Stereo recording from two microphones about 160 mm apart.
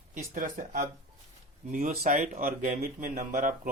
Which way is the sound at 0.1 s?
55° right (ahead or behind).